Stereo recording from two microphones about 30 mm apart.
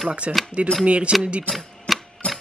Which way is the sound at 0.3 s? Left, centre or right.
Right.